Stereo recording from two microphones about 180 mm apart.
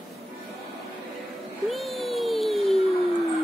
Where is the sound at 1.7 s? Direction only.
Centre (ahead or behind).